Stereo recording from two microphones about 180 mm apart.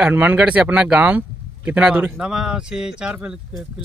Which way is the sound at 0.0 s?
10° right (ahead or behind).